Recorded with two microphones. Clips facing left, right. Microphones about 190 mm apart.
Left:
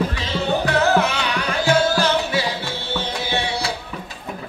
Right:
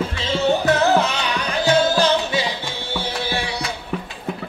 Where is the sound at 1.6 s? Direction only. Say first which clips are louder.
Right 1 dB; 20° right (ahead or behind).